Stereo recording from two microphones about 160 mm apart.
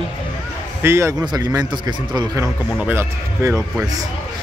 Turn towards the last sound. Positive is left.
turn(degrees=-15)  # may be behind; listen again after turning